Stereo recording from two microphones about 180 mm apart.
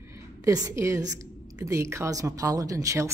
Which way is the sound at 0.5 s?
20° right (ahead or behind).